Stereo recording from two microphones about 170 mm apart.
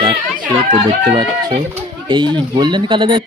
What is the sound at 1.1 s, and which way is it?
Speech, 30° right (ahead or behind).